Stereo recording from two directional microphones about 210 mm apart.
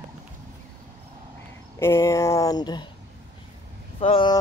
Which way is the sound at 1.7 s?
10° left (ahead or behind).